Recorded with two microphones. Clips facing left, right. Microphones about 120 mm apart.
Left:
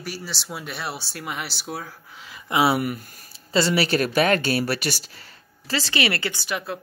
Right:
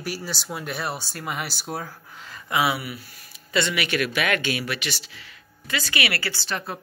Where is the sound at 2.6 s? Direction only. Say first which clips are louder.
Left 5 dB; 50° left (ahead or behind).